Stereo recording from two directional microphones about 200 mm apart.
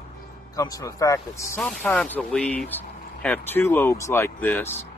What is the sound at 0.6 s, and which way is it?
Speech, 15° left (ahead or behind).